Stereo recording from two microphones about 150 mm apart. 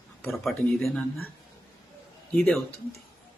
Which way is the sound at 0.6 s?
5° left (ahead or behind).